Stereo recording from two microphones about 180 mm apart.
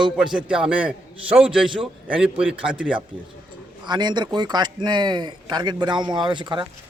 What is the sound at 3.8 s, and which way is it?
Speech, 25° right (ahead or behind).